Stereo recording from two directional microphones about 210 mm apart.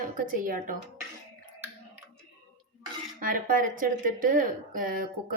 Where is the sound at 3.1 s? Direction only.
40° right (ahead or behind).